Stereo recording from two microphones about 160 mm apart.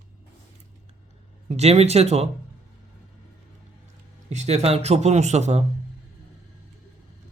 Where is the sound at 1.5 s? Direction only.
40° right (ahead or behind).